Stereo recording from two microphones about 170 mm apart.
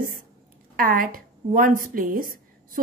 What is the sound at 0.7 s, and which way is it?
A woman's voice, 55° right (ahead or behind).